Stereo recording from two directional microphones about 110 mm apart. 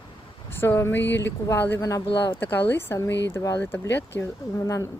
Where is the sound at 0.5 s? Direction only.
20° left (ahead or behind).